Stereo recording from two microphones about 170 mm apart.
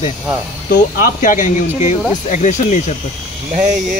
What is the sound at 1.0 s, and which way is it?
Speech, 50° left (ahead or behind).